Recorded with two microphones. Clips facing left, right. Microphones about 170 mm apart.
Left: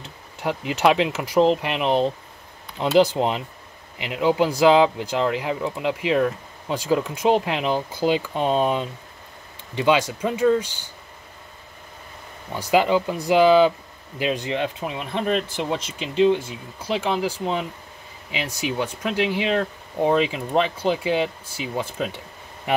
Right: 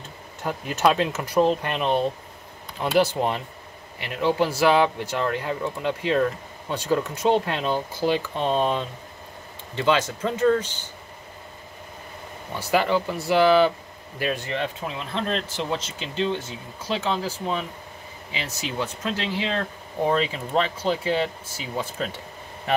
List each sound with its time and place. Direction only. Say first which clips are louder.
0.4 s speech: left 2 dB; 15° left (ahead or behind)
12.5 s speech: left 3 dB; 15° left (ahead or behind)